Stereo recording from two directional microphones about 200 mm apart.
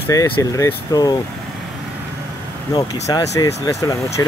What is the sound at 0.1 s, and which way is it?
Speech, 15° left (ahead or behind).